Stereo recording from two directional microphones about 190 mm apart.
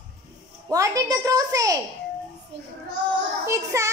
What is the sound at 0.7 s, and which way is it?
Speech, 20° right (ahead or behind).